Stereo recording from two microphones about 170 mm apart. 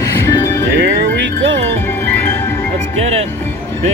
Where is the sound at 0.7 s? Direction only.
90° right.